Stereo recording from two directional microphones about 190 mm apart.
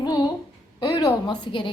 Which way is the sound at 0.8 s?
25° left (ahead or behind).